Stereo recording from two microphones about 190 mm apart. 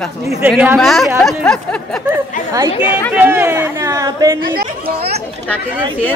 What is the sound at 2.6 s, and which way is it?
A woman's voice, 10° right (ahead or behind).